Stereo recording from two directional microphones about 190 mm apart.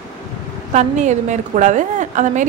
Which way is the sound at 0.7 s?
40° right (ahead or behind).